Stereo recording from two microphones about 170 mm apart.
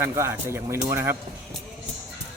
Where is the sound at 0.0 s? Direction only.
15° right (ahead or behind).